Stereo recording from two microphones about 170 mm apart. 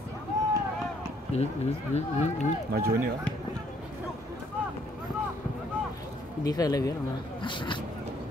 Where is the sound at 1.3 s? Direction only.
40° left (ahead or behind).